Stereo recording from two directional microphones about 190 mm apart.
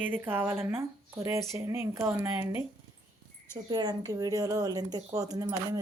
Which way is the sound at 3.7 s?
20° right (ahead or behind).